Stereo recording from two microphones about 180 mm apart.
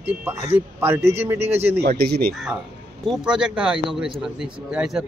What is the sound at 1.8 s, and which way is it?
Speech, 60° right (ahead or behind).